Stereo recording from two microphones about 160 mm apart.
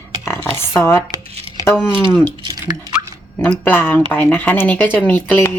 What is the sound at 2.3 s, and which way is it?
Speech, 30° right (ahead or behind).